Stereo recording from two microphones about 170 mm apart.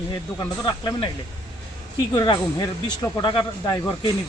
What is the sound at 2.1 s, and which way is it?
Speech, 25° left (ahead or behind).